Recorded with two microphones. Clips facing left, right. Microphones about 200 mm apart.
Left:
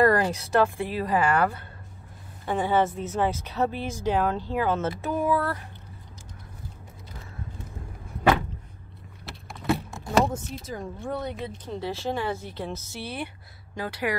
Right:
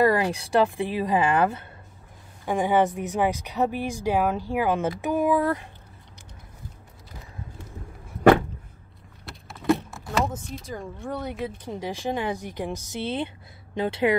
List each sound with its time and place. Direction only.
0.0 s speech: 10° right (ahead or behind)
9.3 s vehicle: 5° left (ahead or behind)
10.3 s speech: 5° left (ahead or behind)
11.6 s speech: 15° right (ahead or behind)